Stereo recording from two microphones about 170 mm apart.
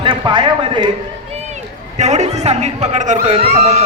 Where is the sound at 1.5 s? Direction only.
40° right (ahead or behind).